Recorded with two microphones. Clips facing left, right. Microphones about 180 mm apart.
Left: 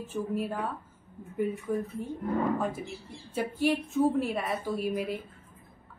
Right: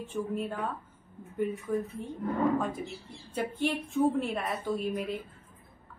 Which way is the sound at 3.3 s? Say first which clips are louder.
Left 3 dB; 5° left (ahead or behind).